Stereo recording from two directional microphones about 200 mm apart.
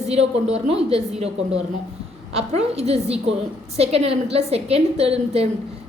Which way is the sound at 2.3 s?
30° right (ahead or behind).